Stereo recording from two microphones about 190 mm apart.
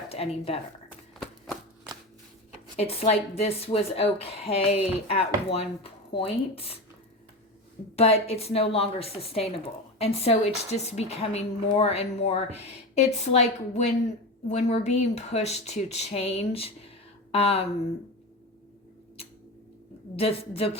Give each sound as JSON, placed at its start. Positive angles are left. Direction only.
{"t": 0.1, "sound": "speech", "side_deg": 30}
{"t": 2.7, "sound": "a woman's voice", "side_deg": 30}
{"t": 7.9, "sound": "a woman's voice", "side_deg": 30}
{"t": 20.1, "sound": "a woman's voice", "side_deg": 30}